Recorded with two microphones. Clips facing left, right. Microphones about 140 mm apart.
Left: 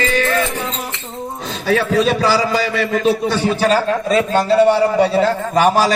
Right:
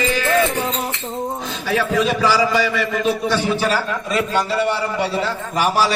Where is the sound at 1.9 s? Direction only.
35° left (ahead or behind).